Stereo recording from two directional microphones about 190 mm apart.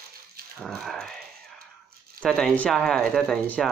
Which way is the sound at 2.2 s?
5° left (ahead or behind).